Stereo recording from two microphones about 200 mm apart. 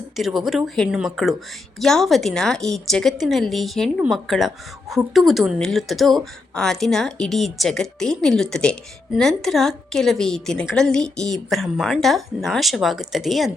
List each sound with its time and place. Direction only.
0.2 s a woman's voice: centre (ahead or behind)